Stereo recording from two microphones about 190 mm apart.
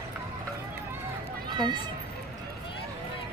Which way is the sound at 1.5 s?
25° right (ahead or behind).